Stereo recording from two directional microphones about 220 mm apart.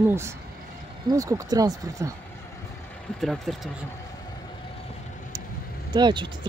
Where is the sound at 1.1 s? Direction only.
15° right (ahead or behind).